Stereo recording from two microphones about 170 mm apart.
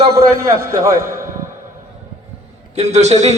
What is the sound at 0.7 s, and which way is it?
Speech, 15° right (ahead or behind).